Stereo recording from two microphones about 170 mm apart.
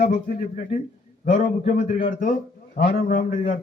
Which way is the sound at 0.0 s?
50° left (ahead or behind).